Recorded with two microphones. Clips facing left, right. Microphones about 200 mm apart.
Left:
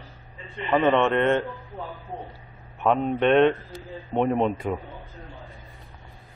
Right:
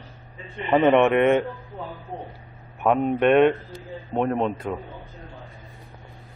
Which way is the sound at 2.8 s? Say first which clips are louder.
Right 2 dB; 10° right (ahead or behind).